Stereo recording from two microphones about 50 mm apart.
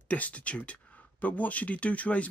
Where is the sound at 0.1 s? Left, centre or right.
Left.